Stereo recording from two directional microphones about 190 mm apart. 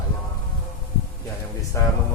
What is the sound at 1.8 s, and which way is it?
Speech, 15° left (ahead or behind).